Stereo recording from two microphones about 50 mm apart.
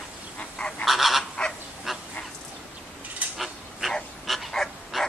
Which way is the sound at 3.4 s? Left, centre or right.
Centre.